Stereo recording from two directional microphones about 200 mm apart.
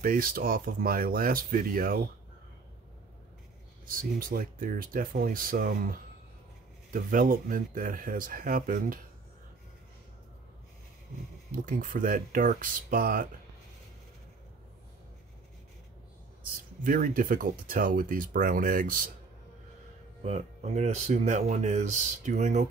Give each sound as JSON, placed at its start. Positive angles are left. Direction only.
{"t": 0.0, "sound": "speech", "side_deg": -45}
{"t": 3.8, "sound": "speech", "side_deg": -45}
{"t": 11.5, "sound": "speech", "side_deg": -45}
{"t": 16.4, "sound": "speech", "side_deg": -45}
{"t": 20.2, "sound": "speech", "side_deg": -35}